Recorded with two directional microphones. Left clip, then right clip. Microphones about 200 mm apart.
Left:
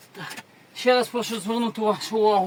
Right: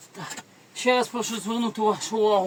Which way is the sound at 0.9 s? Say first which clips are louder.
Left 2 dB; 10° left (ahead or behind).